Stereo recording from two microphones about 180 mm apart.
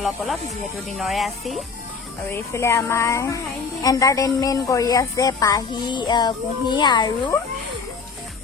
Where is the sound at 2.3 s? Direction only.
15° left (ahead or behind).